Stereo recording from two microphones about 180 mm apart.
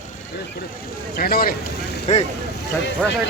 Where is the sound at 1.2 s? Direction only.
55° left (ahead or behind).